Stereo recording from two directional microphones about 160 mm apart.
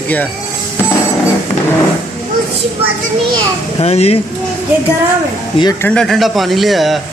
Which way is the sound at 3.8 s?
40° left (ahead or behind).